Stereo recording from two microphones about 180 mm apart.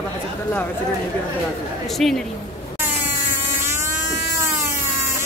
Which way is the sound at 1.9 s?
Centre (ahead or behind).